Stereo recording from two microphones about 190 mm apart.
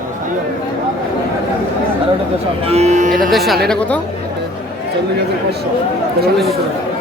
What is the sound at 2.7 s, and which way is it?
Speech, 35° right (ahead or behind).